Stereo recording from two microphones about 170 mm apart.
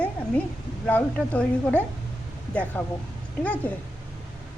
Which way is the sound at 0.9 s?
10° left (ahead or behind).